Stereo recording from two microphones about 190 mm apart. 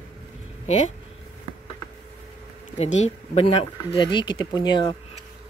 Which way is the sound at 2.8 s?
35° left (ahead or behind).